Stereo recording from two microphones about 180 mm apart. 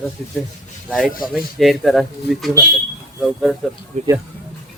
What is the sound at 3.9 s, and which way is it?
Speech, 40° right (ahead or behind).